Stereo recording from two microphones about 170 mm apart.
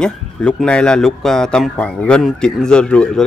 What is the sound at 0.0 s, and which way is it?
Speech, 5° left (ahead or behind).